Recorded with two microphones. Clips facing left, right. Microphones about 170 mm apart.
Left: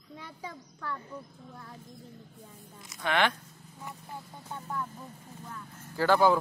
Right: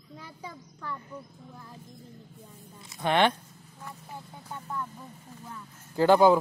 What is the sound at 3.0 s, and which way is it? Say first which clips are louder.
Speech: right 4 dB; 25° right (ahead or behind).